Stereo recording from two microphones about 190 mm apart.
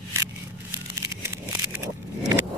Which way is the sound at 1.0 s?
15° right (ahead or behind).